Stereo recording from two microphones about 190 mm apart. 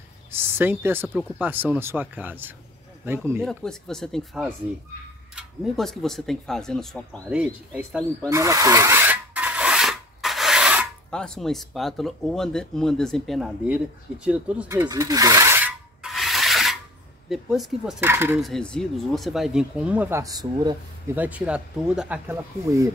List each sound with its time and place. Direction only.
0.3 s speech: 10° right (ahead or behind)
3.4 s speech: 5° left (ahead or behind)
8.3 s filing: 15° right (ahead or behind)
11.1 s speech: 5° left (ahead or behind)
14.2 s filing: 5° right (ahead or behind)
17.3 s speech: centre (ahead or behind)
18.4 s speech: 5° left (ahead or behind); by 21.2 s 20° right (ahead or behind)
21.2 s speech: 5° right (ahead or behind)
22.3 s speech: 15° right (ahead or behind)